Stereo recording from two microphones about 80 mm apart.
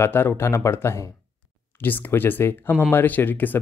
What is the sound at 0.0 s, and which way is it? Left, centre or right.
Speech, left.